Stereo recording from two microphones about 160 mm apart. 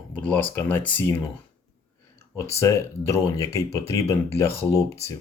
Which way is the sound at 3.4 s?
20° left (ahead or behind).